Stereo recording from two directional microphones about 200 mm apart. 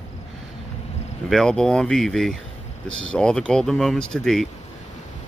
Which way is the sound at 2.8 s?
75° right (ahead or behind).